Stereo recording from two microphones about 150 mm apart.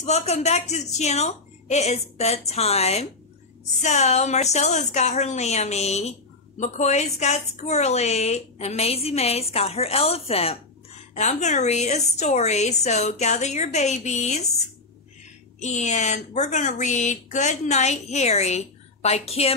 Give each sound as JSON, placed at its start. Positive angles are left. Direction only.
{"t": 0.0, "sound": "a woman's voice", "side_deg": 45}
{"t": 15.6, "sound": "a woman's voice", "side_deg": 50}